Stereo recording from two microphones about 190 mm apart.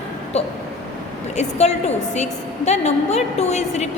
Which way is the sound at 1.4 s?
35° left (ahead or behind).